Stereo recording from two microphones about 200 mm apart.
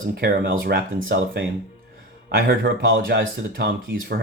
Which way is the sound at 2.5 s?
60° right (ahead or behind).